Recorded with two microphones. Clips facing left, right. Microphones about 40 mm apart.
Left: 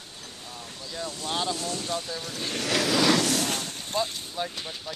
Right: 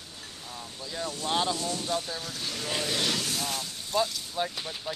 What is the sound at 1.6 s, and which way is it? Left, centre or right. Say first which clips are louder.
Speech: even; left.